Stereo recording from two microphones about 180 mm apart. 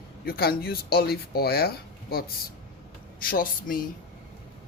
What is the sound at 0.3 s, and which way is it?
Speech, 55° left (ahead or behind).